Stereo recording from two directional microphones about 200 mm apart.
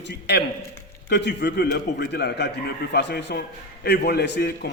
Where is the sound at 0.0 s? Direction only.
55° left (ahead or behind).